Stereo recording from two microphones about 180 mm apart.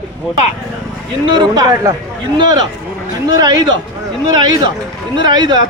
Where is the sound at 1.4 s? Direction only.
20° right (ahead or behind).